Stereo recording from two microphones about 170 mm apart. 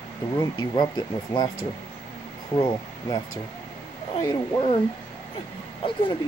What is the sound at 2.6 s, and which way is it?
Speech, 25° left (ahead or behind).